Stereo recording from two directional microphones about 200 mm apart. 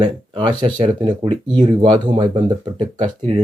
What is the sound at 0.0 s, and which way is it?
Speech, 20° right (ahead or behind).